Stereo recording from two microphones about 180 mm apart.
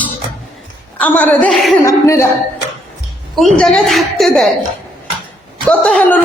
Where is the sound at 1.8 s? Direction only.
15° left (ahead or behind).